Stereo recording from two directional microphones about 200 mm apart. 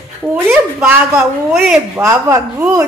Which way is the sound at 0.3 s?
5° right (ahead or behind).